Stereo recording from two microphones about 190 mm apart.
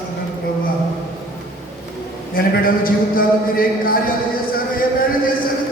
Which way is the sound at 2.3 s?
50° left (ahead or behind).